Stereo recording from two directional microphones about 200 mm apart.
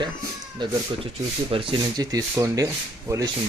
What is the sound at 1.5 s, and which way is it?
Speech, 25° right (ahead or behind).